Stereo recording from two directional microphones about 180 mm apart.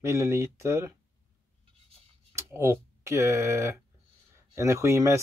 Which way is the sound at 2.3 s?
15° right (ahead or behind).